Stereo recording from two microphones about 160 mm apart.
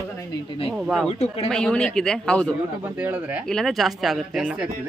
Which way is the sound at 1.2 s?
40° left (ahead or behind).